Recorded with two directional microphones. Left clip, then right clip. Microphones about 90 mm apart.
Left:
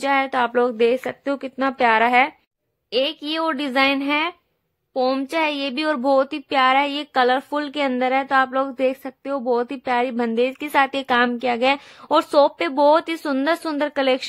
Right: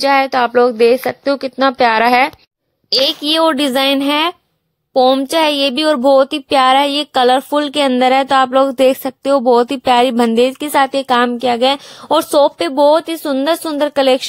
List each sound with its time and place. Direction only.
0.0 s speech: 15° right (ahead or behind); by 2.3 s 35° right (ahead or behind)
2.9 s speech: 55° right (ahead or behind)
5.3 s a sound: 50° right (ahead or behind)
6.0 s speech: 45° right (ahead or behind)
8.0 s speech: 75° right (ahead or behind); by 10.7 s 50° right (ahead or behind)
10.7 s speech: 30° right (ahead or behind)
12.9 s speech: 15° right (ahead or behind)